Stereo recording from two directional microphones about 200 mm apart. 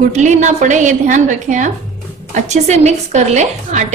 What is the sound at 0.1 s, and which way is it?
A woman's voice, 35° right (ahead or behind).